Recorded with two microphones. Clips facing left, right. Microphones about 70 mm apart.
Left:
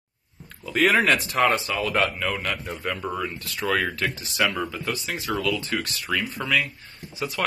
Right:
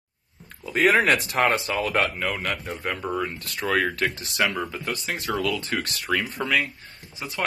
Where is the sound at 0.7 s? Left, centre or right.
Right.